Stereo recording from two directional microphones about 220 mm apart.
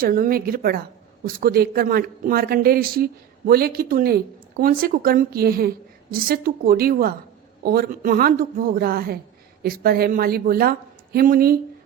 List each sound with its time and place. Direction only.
0.0 s speech: 40° right (ahead or behind)